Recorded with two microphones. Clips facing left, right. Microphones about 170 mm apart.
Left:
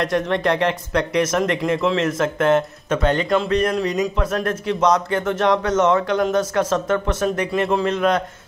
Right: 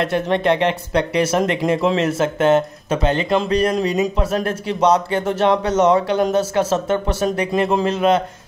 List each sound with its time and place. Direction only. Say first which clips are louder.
0.0 s a man's voice: right 2 dB; 25° right (ahead or behind)